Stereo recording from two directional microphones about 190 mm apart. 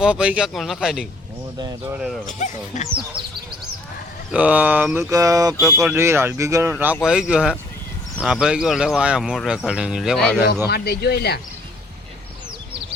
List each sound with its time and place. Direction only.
0.0 s speech: 5° right (ahead or behind)
2.2 s speech: 40° left (ahead or behind)
4.3 s speech: 5° right (ahead or behind)
5.1 s speech: 20° right (ahead or behind); by 10.3 s centre (ahead or behind)
10.7 s speech: 60° left (ahead or behind)